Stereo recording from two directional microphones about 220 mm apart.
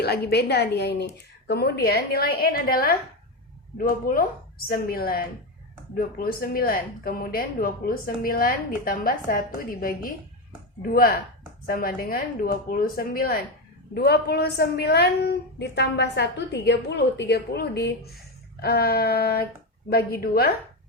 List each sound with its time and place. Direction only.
0.0 s a woman's voice: 45° left (ahead or behind)